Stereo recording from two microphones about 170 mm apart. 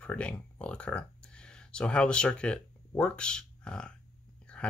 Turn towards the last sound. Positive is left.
turn(degrees=5)  # may be behind; listen again after turning